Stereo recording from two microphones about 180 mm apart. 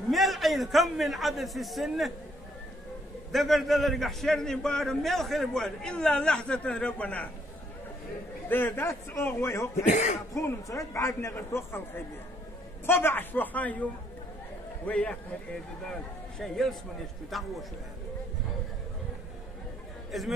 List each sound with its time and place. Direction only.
0.1 s a man's voice: centre (ahead or behind)
3.3 s a man's voice: centre (ahead or behind)
8.5 s a man's voice: 10° left (ahead or behind)
9.8 s speech: 40° left (ahead or behind)
10.3 s a man's voice: 20° left (ahead or behind)
12.8 s a man's voice: 10° left (ahead or behind)
14.9 s a man's voice: 5° left (ahead or behind)
20.1 s speech: centre (ahead or behind)